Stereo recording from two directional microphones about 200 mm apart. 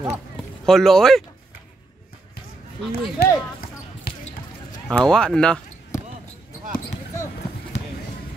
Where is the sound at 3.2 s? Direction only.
50° left (ahead or behind).